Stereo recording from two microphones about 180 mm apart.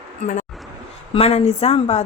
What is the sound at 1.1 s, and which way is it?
Speech, 35° left (ahead or behind).